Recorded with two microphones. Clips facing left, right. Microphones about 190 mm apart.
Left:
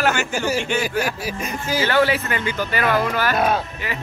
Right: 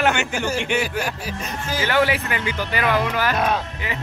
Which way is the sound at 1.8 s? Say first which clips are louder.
Left 1 dB; 15° right (ahead or behind).